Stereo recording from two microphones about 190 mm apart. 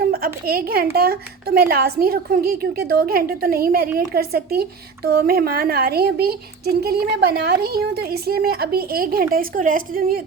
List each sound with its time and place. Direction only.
0.0 s a woman's voice: 50° right (ahead or behind)